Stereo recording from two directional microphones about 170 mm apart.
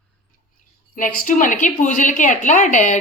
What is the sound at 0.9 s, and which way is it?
A woman's voice, 50° left (ahead or behind).